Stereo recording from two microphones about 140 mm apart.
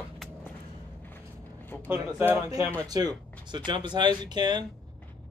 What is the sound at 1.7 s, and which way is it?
Speech, 15° left (ahead or behind).